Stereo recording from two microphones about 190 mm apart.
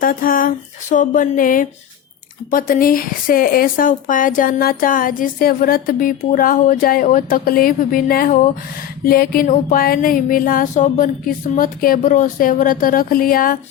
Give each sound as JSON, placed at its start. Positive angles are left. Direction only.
{"t": 0.0, "sound": "speech", "side_deg": 45}